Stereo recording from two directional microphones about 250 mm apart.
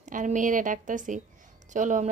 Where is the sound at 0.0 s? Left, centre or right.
Right.